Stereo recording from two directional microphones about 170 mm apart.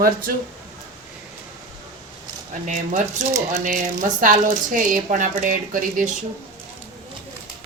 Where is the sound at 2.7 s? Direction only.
45° right (ahead or behind).